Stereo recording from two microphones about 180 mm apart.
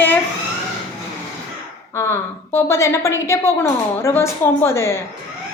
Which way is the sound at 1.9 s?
15° left (ahead or behind).